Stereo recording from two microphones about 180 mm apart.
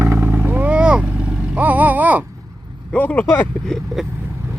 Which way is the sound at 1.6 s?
10° right (ahead or behind).